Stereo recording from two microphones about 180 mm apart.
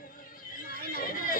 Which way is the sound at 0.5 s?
50° left (ahead or behind).